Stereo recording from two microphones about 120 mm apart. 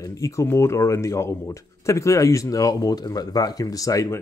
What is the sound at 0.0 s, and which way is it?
Speech, 25° left (ahead or behind).